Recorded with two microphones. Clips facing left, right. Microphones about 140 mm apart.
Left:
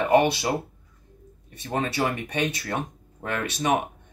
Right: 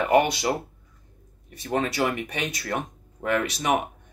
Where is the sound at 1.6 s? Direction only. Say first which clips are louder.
Right 1 dB; 30° left (ahead or behind).